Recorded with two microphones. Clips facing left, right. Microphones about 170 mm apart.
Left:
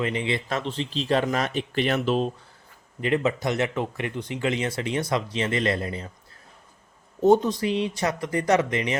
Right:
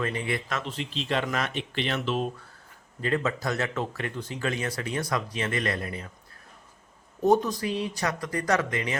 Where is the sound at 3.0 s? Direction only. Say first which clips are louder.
Left 4 dB; 20° left (ahead or behind).